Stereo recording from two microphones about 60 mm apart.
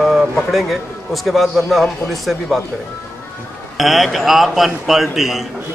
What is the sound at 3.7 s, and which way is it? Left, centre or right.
Speech, centre.